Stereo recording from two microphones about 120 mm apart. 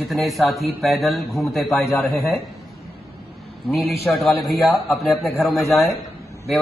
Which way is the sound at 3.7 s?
Centre (ahead or behind).